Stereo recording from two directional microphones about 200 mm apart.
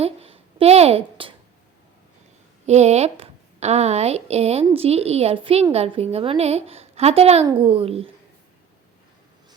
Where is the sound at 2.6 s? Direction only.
35° right (ahead or behind).